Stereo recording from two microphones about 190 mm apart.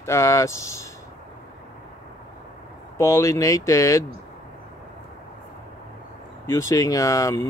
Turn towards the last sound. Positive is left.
turn(degrees=15)  # may be behind; listen again after turning